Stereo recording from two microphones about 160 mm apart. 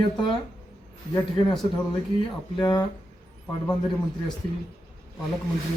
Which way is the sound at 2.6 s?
20° left (ahead or behind).